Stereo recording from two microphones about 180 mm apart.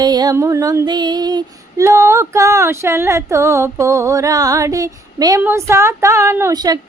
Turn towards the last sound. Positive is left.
turn(degrees=-20)  # may be behind; listen again after turning